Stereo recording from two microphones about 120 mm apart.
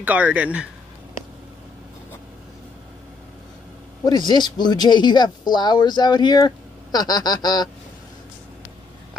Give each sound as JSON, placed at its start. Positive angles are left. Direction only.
{"t": 0.0, "sound": "speech", "side_deg": -10}
{"t": 4.0, "sound": "speech", "side_deg": 35}